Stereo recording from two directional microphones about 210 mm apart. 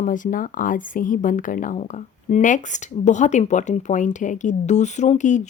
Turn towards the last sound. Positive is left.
turn(degrees=35)  # may be behind; listen again after turning